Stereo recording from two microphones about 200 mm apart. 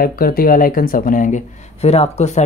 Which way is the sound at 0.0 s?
45° left (ahead or behind).